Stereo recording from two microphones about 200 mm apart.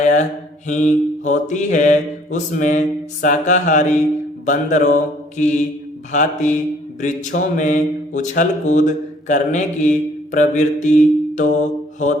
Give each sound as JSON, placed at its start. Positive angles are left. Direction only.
{"t": 0.0, "sound": "mantra", "side_deg": 35}